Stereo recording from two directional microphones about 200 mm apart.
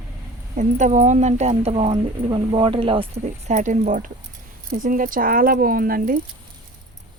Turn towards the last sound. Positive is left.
turn(degrees=-45)  # may be behind; listen again after turning